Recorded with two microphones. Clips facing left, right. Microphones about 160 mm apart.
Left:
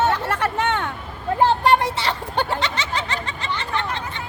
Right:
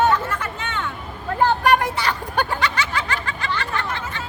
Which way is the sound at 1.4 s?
25° left (ahead or behind).